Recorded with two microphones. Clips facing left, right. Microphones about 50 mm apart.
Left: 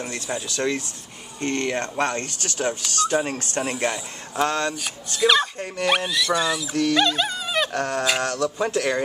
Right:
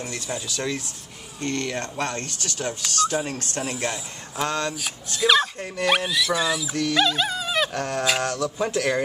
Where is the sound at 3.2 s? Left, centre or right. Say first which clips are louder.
Left 3 dB; left.